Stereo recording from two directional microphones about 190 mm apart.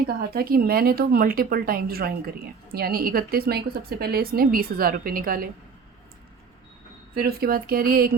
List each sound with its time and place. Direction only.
0.1 s speech: 55° right (ahead or behind)
7.2 s speech: 55° right (ahead or behind)